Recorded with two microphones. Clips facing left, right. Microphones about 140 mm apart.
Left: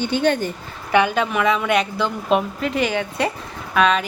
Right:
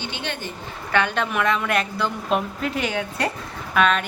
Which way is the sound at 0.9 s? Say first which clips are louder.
Left 5 dB; 10° left (ahead or behind).